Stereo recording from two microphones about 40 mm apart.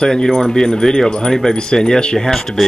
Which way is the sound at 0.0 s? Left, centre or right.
Centre.